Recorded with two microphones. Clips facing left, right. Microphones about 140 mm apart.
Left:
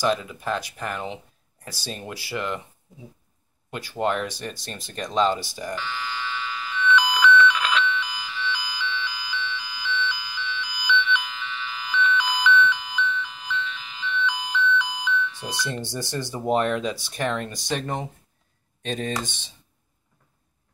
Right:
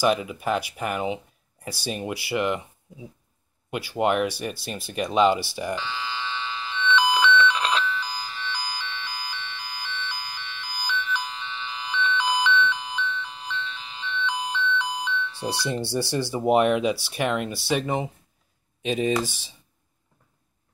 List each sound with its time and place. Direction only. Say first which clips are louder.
0.0 s speech: right 2 dB; 15° right (ahead or behind)
3.7 s speech: right 3 dB; 15° right (ahead or behind)
5.6 s alarm: right 2 dB; 15° right (ahead or behind); by 15.6 s 35° right (ahead or behind)
15.6 s speech: right 3 dB; 10° right (ahead or behind)